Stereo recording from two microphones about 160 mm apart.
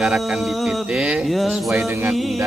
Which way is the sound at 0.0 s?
Centre (ahead or behind).